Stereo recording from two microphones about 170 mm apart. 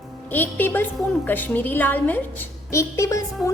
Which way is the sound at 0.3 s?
10° left (ahead or behind).